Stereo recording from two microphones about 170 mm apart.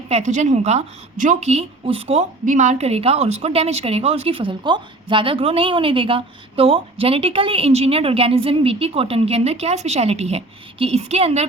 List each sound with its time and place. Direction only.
0.1 s a woman's voice: 45° right (ahead or behind)